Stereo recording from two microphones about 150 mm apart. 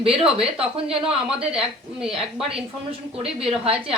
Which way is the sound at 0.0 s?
40° right (ahead or behind).